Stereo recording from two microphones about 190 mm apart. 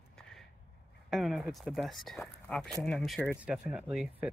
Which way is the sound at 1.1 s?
Centre (ahead or behind).